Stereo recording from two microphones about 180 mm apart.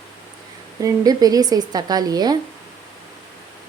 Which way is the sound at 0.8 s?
20° right (ahead or behind).